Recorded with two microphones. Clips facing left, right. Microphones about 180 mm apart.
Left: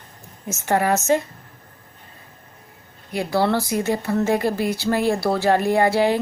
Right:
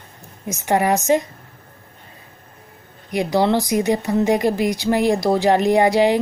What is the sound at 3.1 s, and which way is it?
A woman's voice, 15° right (ahead or behind).